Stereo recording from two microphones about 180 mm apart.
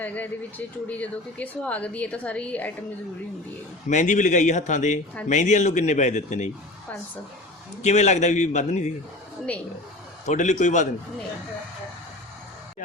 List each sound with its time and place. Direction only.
0.0 s speech: 10° left (ahead or behind)
3.8 s a man's voice: 45° left (ahead or behind)
7.8 s a man's voice: 40° left (ahead or behind)
10.2 s a man's voice: 40° left (ahead or behind)